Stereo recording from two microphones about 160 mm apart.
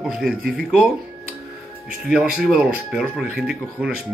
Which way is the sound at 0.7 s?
Centre (ahead or behind).